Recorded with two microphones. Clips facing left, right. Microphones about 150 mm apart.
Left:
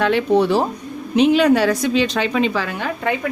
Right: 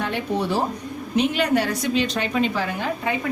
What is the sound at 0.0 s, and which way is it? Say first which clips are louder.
A woman's voice: left 9 dB; 90° left.